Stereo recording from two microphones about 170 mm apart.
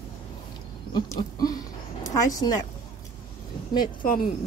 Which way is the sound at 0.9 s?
25° left (ahead or behind).